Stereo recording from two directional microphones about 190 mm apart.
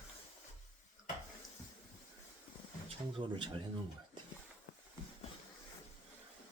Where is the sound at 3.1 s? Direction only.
25° right (ahead or behind).